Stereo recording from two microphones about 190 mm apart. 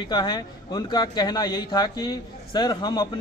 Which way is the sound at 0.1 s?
25° left (ahead or behind).